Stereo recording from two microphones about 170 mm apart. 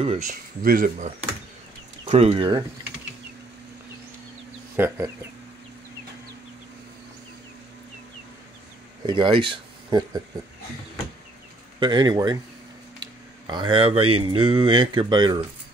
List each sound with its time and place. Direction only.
0.0 s speech: 40° right (ahead or behind)
2.0 s speech: 35° right (ahead or behind)
4.7 s speech: 15° right (ahead or behind)
9.0 s speech: 30° right (ahead or behind)
11.8 s speech: 25° right (ahead or behind)